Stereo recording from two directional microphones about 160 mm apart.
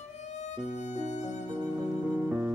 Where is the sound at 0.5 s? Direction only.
45° left (ahead or behind).